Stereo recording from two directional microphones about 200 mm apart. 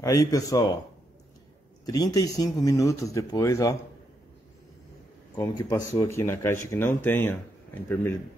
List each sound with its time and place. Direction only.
0.0 s speech: 15° left (ahead or behind)
1.9 s speech: 20° left (ahead or behind)
5.6 s speech: 20° left (ahead or behind)